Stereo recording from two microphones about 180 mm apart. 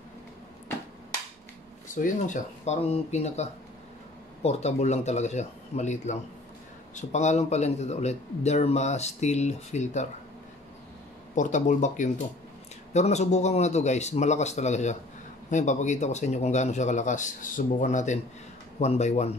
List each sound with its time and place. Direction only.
2.0 s speech: 45° left (ahead or behind)
11.3 s speech: 45° left (ahead or behind)